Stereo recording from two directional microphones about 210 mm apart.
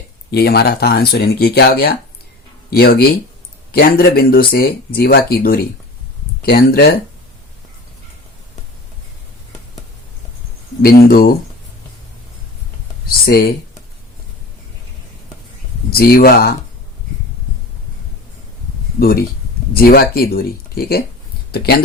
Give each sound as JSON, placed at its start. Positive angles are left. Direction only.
{"t": 0.3, "sound": "speech", "side_deg": 50}
{"t": 10.8, "sound": "speech", "side_deg": 45}
{"t": 13.1, "sound": "speech", "side_deg": 45}
{"t": 15.9, "sound": "speech", "side_deg": 45}
{"t": 18.9, "sound": "speech", "side_deg": 45}